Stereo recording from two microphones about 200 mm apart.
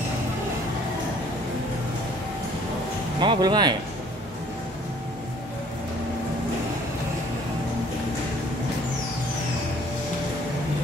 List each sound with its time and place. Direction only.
3.2 s speech: 20° right (ahead or behind)